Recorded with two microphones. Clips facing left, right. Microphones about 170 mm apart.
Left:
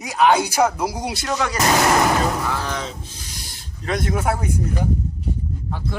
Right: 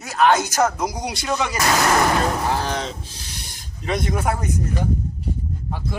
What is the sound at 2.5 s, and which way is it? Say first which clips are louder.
Speech: right 2 dB; 35° right (ahead or behind).